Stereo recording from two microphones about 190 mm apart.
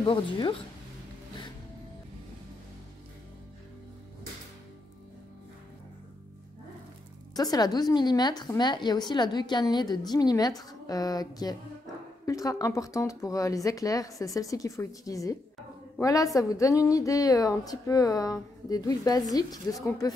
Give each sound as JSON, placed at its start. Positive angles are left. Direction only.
{"t": 0.0, "sound": "a woman's voice", "side_deg": 25}
{"t": 7.3, "sound": "a woman's voice", "side_deg": 20}